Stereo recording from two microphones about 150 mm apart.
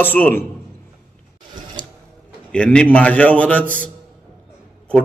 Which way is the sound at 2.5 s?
5° left (ahead or behind).